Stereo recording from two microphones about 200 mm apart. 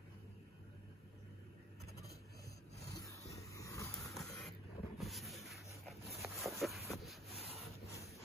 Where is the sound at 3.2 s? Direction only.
15° left (ahead or behind).